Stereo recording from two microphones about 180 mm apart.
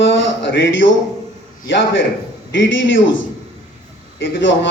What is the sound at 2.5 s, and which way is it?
Speech, 90° left.